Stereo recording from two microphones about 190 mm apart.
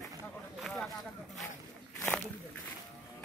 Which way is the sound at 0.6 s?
Centre (ahead or behind).